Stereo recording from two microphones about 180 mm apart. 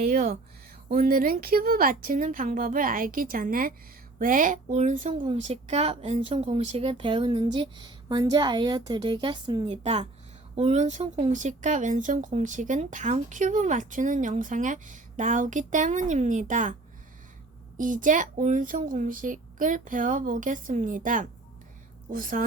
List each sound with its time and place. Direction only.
0.0 s speech: 40° right (ahead or behind)
5.1 s speech: 30° right (ahead or behind)
17.7 s speech: 45° right (ahead or behind)